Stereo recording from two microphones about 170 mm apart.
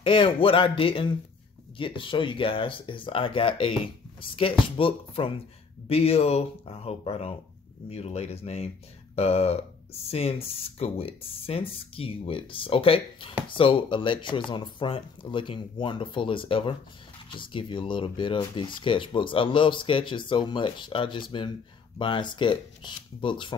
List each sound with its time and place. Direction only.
0.0 s speech: 30° left (ahead or behind)